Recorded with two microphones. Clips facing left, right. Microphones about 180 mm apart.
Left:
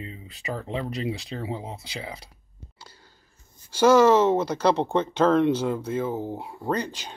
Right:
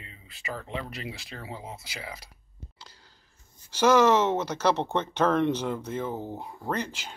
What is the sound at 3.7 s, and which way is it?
Speech, 10° left (ahead or behind).